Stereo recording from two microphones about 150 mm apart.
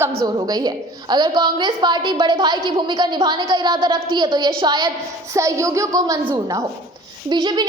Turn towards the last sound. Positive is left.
turn(degrees=-30)  # may be behind; listen again after turning